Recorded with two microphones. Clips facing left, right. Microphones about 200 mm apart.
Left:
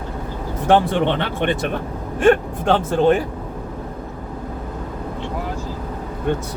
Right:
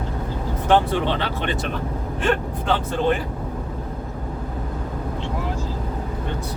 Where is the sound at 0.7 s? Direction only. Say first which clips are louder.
Left 3 dB; 55° left (ahead or behind).